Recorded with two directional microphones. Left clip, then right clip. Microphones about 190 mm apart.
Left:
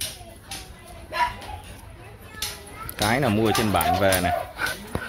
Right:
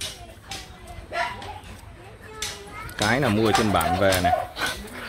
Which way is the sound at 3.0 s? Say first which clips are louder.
Even; centre (ahead or behind).